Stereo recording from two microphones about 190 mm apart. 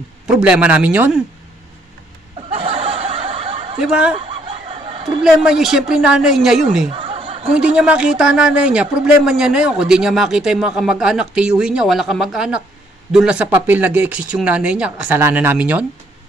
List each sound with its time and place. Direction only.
0.3 s speech: 5° right (ahead or behind)
2.5 s snicker: 25° right (ahead or behind)
3.8 s speech: 5° right (ahead or behind)
4.1 s snicker: 25° right (ahead or behind)
5.2 s speech: 5° right (ahead or behind)
6.9 s snicker: 25° right (ahead or behind)
7.5 s speech: 5° right (ahead or behind)